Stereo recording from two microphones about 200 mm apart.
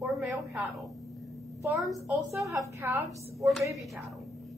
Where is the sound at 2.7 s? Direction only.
10° right (ahead or behind).